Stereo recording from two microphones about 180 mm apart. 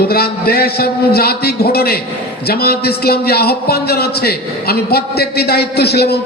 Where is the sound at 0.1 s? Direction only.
60° left (ahead or behind).